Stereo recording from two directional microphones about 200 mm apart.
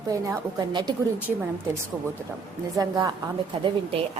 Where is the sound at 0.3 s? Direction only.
20° right (ahead or behind).